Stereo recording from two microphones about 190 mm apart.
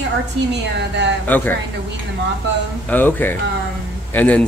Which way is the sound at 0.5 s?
65° right (ahead or behind).